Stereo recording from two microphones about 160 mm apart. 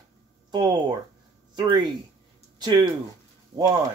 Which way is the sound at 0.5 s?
30° right (ahead or behind).